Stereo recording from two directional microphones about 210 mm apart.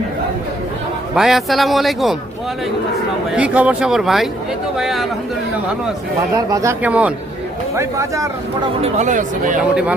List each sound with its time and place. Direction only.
1.1 s a man's voice: centre (ahead or behind)
3.3 s a man's voice: 5° right (ahead or behind)
6.3 s speech: 15° right (ahead or behind)
8.8 s speech: 35° right (ahead or behind)